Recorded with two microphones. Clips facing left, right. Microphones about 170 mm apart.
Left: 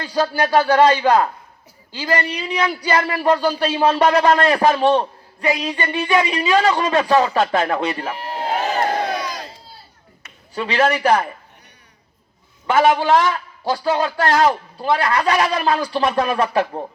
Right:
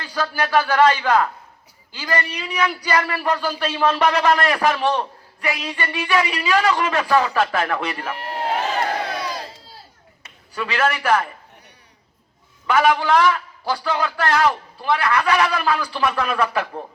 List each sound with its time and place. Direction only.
0.0 s speech: 35° left (ahead or behind)
8.1 s speech: 65° right (ahead or behind)
9.1 s crowd: 30° right (ahead or behind)
10.5 s speech: 35° left (ahead or behind)
12.6 s a man's voice: 25° left (ahead or behind)